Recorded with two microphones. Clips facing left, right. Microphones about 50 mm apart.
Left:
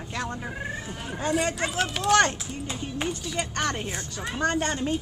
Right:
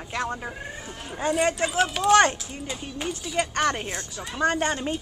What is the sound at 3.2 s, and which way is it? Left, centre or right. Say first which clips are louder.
Speech: right 4 dB; centre.